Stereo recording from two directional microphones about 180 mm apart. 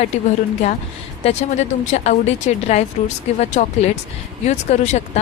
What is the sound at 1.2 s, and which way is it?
Speech, 40° left (ahead or behind).